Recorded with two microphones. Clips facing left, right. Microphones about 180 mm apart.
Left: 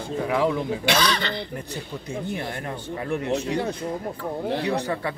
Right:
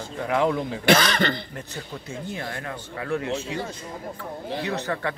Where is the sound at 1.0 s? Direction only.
50° right (ahead or behind).